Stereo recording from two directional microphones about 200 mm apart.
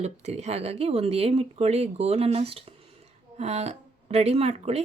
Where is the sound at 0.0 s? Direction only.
35° right (ahead or behind).